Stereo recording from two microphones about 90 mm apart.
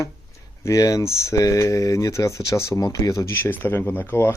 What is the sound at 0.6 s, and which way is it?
Speech, 40° left (ahead or behind).